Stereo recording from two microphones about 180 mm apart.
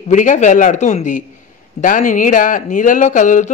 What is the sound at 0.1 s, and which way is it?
Speech, 45° left (ahead or behind).